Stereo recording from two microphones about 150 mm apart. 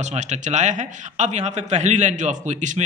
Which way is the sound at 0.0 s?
50° right (ahead or behind).